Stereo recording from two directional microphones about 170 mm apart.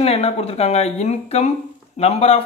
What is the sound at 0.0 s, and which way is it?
Speech, 35° left (ahead or behind).